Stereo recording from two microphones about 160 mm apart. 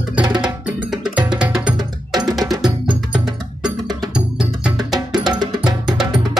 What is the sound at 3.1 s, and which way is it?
Music, 5° right (ahead or behind).